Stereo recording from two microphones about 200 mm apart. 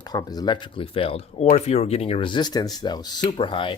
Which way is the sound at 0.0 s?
20° left (ahead or behind).